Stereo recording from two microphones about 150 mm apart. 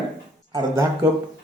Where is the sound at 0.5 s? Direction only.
20° right (ahead or behind).